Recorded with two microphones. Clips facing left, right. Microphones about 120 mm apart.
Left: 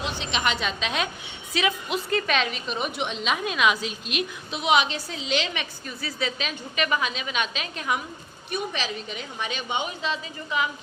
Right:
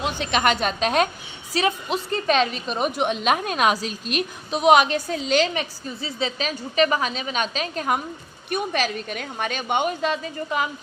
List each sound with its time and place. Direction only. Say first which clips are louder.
0.0 s a woman's voice: right 5 dB; 50° right (ahead or behind)
6.0 s a woman's voice: right 3 dB; 25° right (ahead or behind); by 8.0 s 45° right (ahead or behind)
8.4 s a woman's voice: right 5 dB; 55° right (ahead or behind)